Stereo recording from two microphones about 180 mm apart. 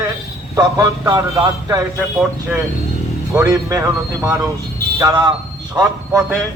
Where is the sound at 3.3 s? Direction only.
15° right (ahead or behind).